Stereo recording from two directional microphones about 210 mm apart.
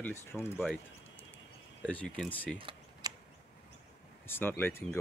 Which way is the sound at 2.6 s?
20° right (ahead or behind).